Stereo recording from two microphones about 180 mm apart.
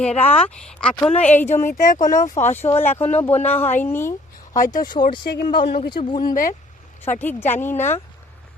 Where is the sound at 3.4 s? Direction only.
10° left (ahead or behind).